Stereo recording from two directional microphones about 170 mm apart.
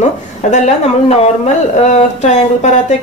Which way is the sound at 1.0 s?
40° left (ahead or behind).